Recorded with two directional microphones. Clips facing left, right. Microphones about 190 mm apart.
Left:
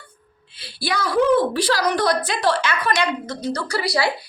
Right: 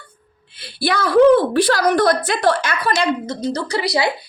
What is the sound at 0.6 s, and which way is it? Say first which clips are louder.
A woman's voice: right 4 dB; 60° right (ahead or behind).